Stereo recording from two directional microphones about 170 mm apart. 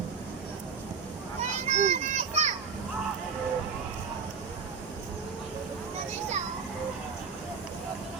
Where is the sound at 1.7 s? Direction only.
40° right (ahead or behind).